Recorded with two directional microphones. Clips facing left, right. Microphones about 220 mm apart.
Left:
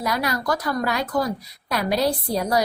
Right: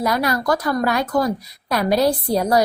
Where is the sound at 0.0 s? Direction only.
50° right (ahead or behind).